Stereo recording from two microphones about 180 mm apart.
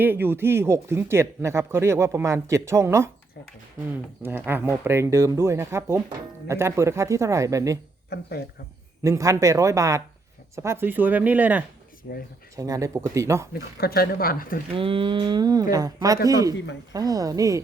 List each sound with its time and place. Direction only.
0.0 s speech: 10° right (ahead or behind)
4.2 s speech: 10° right (ahead or behind)
8.1 s speech: 65° left (ahead or behind)
9.0 s speech: 15° right (ahead or behind)
12.1 s speech: 55° left (ahead or behind)
12.5 s speech: 20° right (ahead or behind)
13.5 s speech: 55° left (ahead or behind)
14.7 s mantra: 30° right (ahead or behind)